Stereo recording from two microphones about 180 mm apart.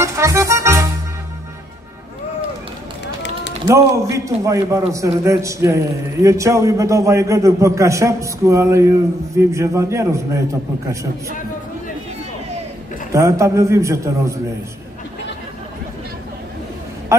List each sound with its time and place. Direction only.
0.0 s music: 15° right (ahead or behind)
3.6 s a man's voice: 15° right (ahead or behind)
13.1 s a man's voice: 15° right (ahead or behind)